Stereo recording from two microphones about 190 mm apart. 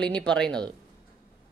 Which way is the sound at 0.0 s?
5° left (ahead or behind).